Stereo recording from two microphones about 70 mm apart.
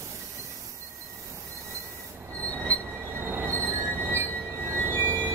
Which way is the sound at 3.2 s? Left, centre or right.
Right.